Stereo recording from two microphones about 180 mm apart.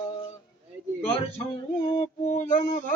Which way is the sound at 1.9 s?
45° left (ahead or behind).